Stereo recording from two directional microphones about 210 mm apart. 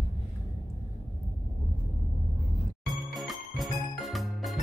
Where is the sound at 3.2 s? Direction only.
Centre (ahead or behind).